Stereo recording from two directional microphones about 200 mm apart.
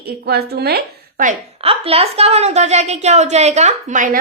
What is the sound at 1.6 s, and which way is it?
A woman's voice, 30° right (ahead or behind).